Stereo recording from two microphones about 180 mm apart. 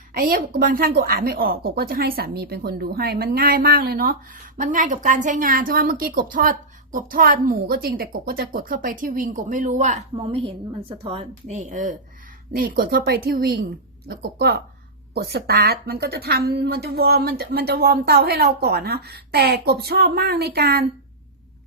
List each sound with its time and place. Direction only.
0.1 s a woman's voice: 55° right (ahead or behind)